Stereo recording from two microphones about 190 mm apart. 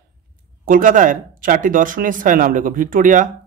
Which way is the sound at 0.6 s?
45° right (ahead or behind).